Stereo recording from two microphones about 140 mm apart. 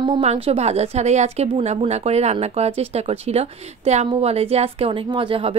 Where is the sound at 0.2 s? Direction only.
45° right (ahead or behind).